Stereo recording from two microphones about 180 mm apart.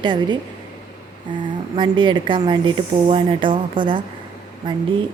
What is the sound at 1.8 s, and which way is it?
A woman's voice, 25° right (ahead or behind).